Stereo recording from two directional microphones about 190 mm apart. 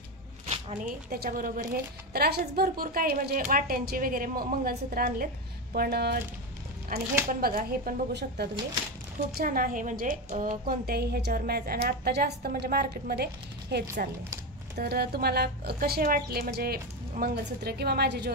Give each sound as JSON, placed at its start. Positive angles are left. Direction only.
{"t": 0.8, "sound": "a woman's voice", "side_deg": -50}
{"t": 9.4, "sound": "a woman's voice", "side_deg": -50}